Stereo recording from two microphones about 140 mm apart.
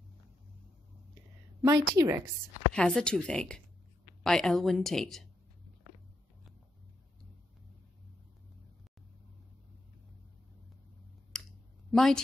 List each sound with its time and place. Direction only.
1.6 s a woman's voice: 25° right (ahead or behind)
2.7 s a woman's voice: 5° left (ahead or behind)
11.3 s a sound: 5° left (ahead or behind)
11.9 s a woman's voice: 5° left (ahead or behind)